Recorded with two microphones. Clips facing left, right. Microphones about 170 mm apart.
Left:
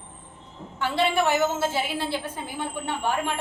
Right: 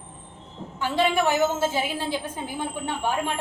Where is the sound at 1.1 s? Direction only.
10° right (ahead or behind).